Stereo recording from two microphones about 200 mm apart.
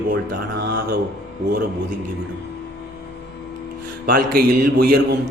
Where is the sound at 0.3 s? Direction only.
50° right (ahead or behind).